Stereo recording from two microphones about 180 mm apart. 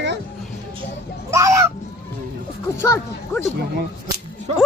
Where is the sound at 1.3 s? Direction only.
15° right (ahead or behind).